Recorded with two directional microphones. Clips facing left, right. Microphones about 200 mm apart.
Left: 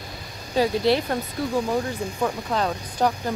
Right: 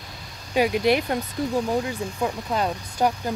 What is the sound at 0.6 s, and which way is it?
Speech, 15° right (ahead or behind).